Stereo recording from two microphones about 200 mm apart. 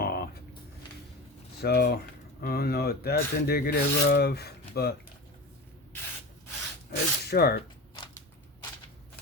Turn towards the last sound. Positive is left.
turn(degrees=50)  # may be behind; listen again after turning